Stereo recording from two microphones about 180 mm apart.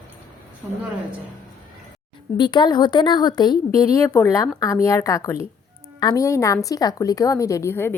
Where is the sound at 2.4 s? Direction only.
25° left (ahead or behind).